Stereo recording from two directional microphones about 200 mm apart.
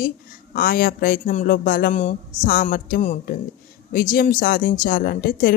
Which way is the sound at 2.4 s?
45° left (ahead or behind).